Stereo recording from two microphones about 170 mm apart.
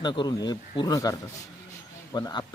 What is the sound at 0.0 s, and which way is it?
Speech, 25° left (ahead or behind).